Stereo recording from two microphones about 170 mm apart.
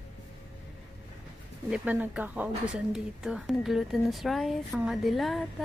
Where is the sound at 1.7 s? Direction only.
10° right (ahead or behind).